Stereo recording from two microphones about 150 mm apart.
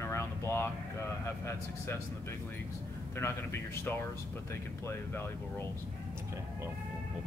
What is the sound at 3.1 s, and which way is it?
Speech, 15° left (ahead or behind).